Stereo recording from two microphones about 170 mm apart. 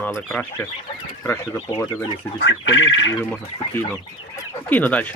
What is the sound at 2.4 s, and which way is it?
Speech, 90° left.